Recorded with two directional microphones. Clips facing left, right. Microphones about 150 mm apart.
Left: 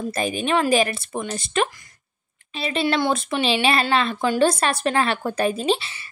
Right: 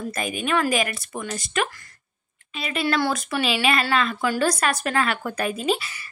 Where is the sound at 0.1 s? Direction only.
30° left (ahead or behind).